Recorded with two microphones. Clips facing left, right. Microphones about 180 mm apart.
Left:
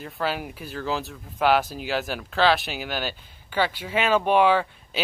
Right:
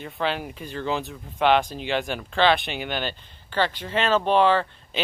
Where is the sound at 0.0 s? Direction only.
5° left (ahead or behind).